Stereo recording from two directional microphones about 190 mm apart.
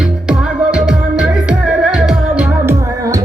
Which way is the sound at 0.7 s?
5° right (ahead or behind).